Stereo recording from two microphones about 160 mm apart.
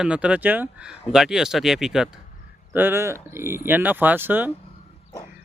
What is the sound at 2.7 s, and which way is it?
Speech, 15° right (ahead or behind).